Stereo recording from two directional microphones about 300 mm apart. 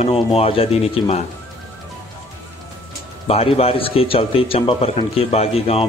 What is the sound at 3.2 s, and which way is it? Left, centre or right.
A man's voice, centre.